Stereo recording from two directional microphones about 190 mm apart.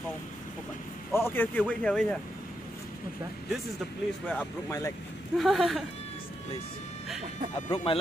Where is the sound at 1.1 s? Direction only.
15° left (ahead or behind).